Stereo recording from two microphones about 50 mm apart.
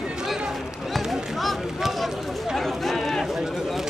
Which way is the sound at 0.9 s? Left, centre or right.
Centre.